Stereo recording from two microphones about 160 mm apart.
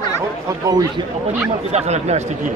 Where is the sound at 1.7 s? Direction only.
45° right (ahead or behind).